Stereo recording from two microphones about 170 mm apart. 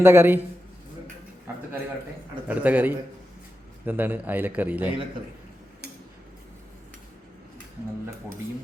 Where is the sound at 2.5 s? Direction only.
10° right (ahead or behind).